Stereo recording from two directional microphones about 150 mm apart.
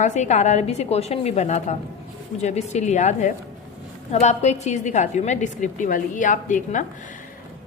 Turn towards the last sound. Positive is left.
turn(degrees=60)  # may be behind; listen again after turning